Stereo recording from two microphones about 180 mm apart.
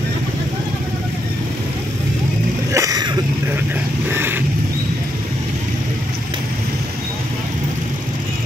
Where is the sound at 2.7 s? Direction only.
20° right (ahead or behind).